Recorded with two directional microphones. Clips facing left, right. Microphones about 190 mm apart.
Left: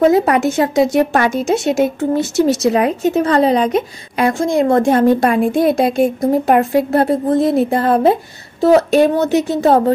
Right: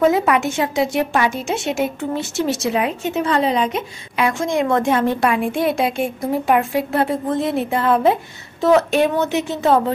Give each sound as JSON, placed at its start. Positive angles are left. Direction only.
{"t": 0.0, "sound": "a woman's voice", "side_deg": 35}